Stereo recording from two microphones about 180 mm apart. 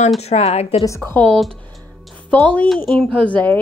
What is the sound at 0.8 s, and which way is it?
A woman's voice, 15° left (ahead or behind).